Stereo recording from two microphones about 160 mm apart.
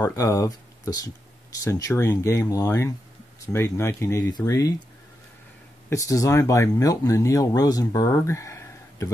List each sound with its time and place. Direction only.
0.0 s speech: 20° left (ahead or behind)
5.9 s speech: 20° left (ahead or behind)